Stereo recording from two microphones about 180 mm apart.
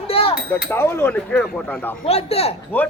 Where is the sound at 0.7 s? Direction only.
15° left (ahead or behind).